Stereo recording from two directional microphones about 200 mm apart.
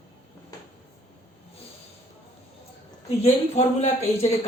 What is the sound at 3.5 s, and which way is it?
Speech, 35° left (ahead or behind).